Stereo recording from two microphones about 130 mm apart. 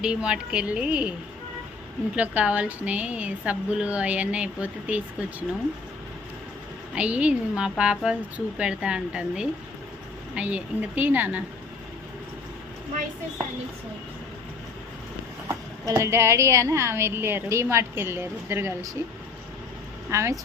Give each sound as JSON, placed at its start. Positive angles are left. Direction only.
{"t": 0.0, "sound": "a woman's voice", "side_deg": -5}
{"t": 2.1, "sound": "a woman's voice", "side_deg": -10}
{"t": 6.9, "sound": "a woman's voice", "side_deg": -10}
{"t": 15.4, "sound": "a woman's voice", "side_deg": -20}
{"t": 20.1, "sound": "speech", "side_deg": -20}